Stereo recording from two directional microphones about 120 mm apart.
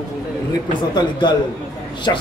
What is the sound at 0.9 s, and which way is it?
Speech, 40° left (ahead or behind).